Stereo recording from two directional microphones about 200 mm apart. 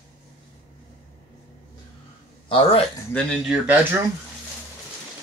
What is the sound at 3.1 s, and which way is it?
Speech, 5° right (ahead or behind).